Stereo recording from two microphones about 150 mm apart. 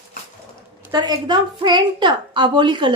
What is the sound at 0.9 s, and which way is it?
A woman's voice, 30° right (ahead or behind).